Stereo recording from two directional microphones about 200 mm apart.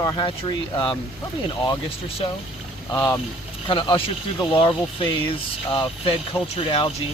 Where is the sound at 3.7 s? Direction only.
25° left (ahead or behind).